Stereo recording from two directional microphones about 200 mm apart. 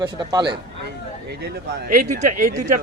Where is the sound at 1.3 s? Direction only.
55° right (ahead or behind).